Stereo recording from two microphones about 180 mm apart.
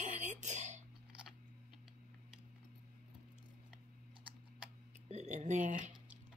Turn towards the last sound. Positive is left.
turn(degrees=-45)  # may be behind; listen again after turning